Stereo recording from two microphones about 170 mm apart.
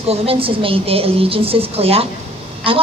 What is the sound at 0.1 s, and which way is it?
A woman's voice, 35° right (ahead or behind).